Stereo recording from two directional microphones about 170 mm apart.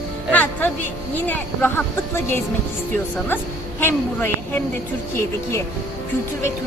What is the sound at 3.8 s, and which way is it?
Speech, 10° left (ahead or behind).